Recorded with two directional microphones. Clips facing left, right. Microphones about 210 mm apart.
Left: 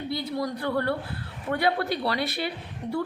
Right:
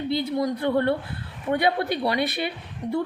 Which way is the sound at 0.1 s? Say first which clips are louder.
Right 5 dB; 20° right (ahead or behind).